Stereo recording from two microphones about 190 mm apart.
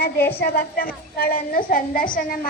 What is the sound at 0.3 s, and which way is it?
A woman's voice, 55° left (ahead or behind).